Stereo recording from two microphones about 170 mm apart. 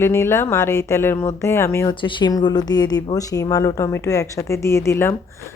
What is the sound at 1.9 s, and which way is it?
Speech, 30° left (ahead or behind).